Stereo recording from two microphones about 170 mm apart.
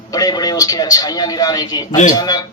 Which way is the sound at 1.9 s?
45° left (ahead or behind).